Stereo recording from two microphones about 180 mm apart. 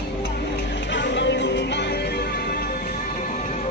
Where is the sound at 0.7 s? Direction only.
75° left (ahead or behind); by 3.7 s 45° left (ahead or behind).